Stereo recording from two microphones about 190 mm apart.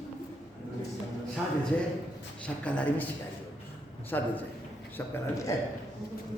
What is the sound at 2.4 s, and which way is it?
Speech, 5° left (ahead or behind).